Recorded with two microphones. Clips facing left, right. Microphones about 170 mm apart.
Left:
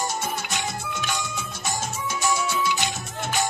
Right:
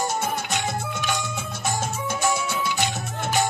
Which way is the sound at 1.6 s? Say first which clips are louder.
Right 3 dB; 55° right (ahead or behind).